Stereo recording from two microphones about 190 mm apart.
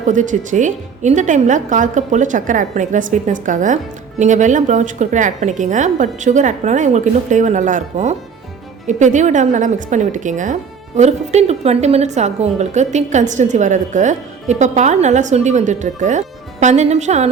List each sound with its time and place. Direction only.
0.0 s a woman's voice: 40° right (ahead or behind)